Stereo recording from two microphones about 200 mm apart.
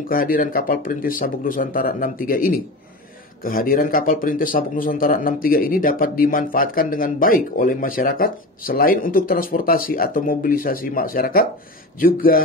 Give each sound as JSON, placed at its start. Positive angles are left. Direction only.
{"t": 0.1, "sound": "speech", "side_deg": 45}